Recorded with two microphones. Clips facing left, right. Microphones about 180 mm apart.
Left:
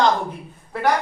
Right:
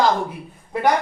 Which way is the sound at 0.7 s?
15° right (ahead or behind).